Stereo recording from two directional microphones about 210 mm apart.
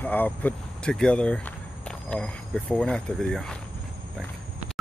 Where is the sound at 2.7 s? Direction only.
5° left (ahead or behind).